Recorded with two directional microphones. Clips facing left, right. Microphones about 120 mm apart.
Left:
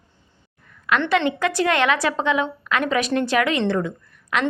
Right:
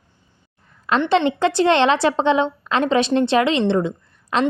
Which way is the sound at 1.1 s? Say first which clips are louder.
Right 5 dB; 30° right (ahead or behind).